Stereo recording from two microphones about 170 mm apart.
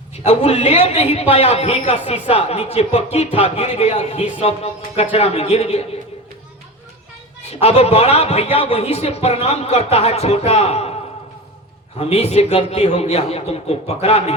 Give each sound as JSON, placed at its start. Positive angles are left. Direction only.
{"t": 0.3, "sound": "a man's voice", "side_deg": 40}
{"t": 7.6, "sound": "a man's voice", "side_deg": 40}
{"t": 11.9, "sound": "a man's voice", "side_deg": 35}